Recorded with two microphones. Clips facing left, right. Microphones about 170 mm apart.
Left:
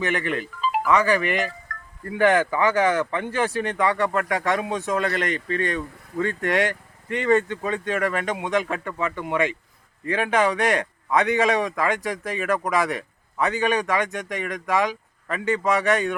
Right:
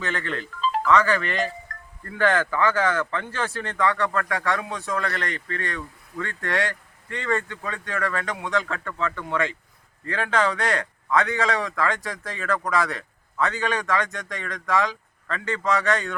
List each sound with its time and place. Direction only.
0.0 s a man's voice: 15° left (ahead or behind)
1.7 s music: 25° right (ahead or behind)
2.0 s a man's voice: 15° left (ahead or behind)